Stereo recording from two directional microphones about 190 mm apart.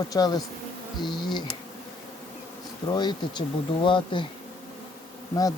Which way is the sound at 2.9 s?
25° left (ahead or behind).